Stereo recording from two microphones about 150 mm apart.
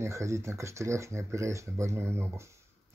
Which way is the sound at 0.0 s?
20° right (ahead or behind).